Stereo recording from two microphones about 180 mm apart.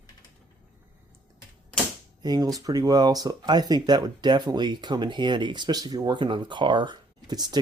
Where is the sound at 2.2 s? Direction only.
20° right (ahead or behind).